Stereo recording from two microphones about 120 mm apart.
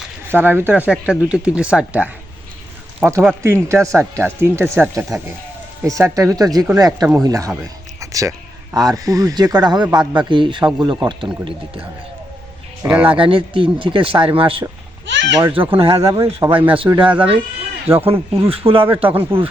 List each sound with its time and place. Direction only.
0.3 s speech: 15° right (ahead or behind)
3.4 s a man's voice: 20° right (ahead or behind); by 11.3 s 40° right (ahead or behind)
12.8 s speech: 15° right (ahead or behind)
13.1 s a man's voice: 45° right (ahead or behind)
15.8 s speech: 50° right (ahead or behind)
16.2 s speech: 20° right (ahead or behind)
17.0 s speech: 10° right (ahead or behind)
18.4 s speech: 50° right (ahead or behind)
19.1 s speech: 15° right (ahead or behind)